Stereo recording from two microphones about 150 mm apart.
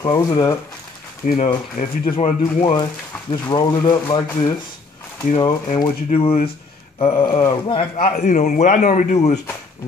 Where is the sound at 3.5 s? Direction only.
30° left (ahead or behind).